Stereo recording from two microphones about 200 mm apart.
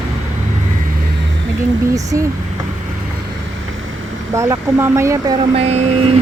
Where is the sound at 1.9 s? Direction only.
15° right (ahead or behind).